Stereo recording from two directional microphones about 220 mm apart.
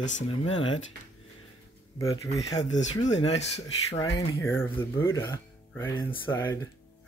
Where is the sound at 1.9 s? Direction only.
15° left (ahead or behind).